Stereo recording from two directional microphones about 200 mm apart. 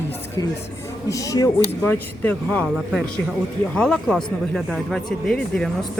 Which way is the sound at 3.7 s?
5° left (ahead or behind).